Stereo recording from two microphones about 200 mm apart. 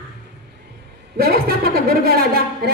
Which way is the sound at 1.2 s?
50° right (ahead or behind).